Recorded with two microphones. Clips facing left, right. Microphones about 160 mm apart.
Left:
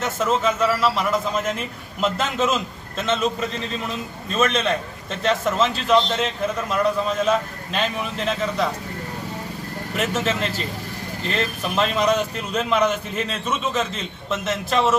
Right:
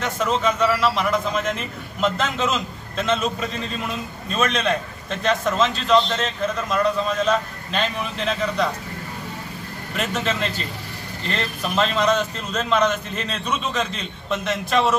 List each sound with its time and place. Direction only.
0.0 s a man's voice: 5° left (ahead or behind)
9.9 s a man's voice: 5° left (ahead or behind)